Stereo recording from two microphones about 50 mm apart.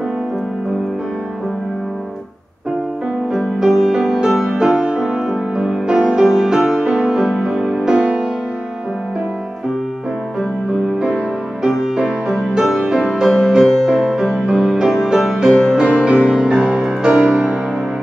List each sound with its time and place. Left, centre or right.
3.6 s music: centre
11.7 s music: centre
15.8 s music: right